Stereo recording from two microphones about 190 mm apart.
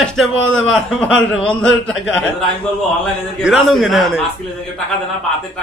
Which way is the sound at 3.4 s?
Centre (ahead or behind).